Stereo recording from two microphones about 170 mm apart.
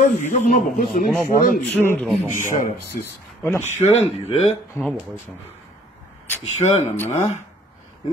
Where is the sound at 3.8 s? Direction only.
40° left (ahead or behind).